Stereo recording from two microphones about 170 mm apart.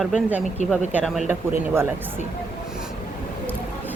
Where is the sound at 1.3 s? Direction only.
15° right (ahead or behind).